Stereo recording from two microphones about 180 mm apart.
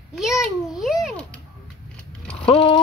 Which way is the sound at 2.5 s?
30° left (ahead or behind).